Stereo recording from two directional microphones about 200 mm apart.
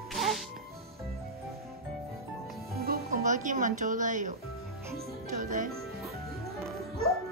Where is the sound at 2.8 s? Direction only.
45° right (ahead or behind).